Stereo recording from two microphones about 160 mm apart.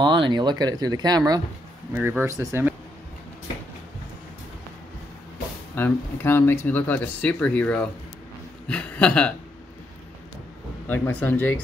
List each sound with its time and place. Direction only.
0.0 s speech: 30° right (ahead or behind)
2.0 s speech: 15° right (ahead or behind)
5.8 s speech: 15° left (ahead or behind)
10.9 s speech: 10° left (ahead or behind)